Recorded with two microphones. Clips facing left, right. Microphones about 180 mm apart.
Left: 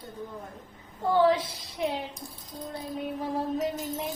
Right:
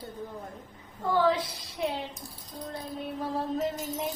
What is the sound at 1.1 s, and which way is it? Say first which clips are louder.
Speech: left 3 dB; 25° left (ahead or behind).